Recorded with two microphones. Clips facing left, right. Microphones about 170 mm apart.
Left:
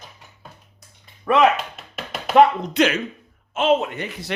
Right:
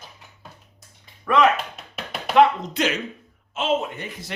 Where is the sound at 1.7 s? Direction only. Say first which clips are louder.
Left 1 dB; centre (ahead or behind).